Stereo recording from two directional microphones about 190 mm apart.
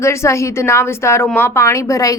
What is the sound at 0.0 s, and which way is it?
A woman's voice, 15° left (ahead or behind).